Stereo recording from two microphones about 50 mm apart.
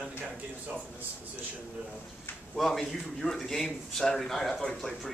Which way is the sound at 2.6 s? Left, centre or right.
Centre.